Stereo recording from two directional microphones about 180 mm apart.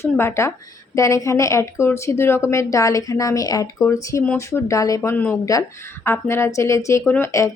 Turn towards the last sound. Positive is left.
turn(degrees=15)  # may be behind; listen again after turning